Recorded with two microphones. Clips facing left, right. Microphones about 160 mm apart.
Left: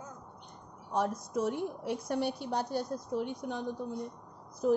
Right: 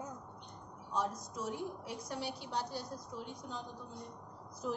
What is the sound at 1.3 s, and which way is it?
A woman's voice, 65° left (ahead or behind).